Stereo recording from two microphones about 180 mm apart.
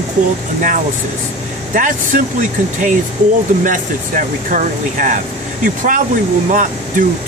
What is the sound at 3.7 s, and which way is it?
Speech, 45° right (ahead or behind).